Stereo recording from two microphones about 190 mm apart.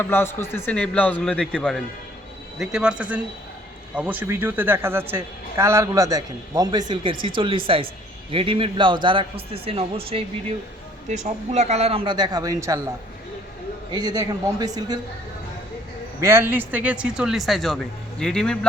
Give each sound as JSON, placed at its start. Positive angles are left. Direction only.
{"t": 0.0, "sound": "a man's voice", "side_deg": 10}
{"t": 3.9, "sound": "a woman's voice", "side_deg": -5}
{"t": 13.9, "sound": "a man's voice", "side_deg": -20}
{"t": 16.2, "sound": "speech", "side_deg": -10}